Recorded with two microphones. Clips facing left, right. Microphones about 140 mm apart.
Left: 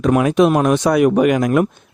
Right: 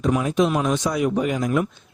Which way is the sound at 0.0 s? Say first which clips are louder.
Left 7 dB; 70° left (ahead or behind).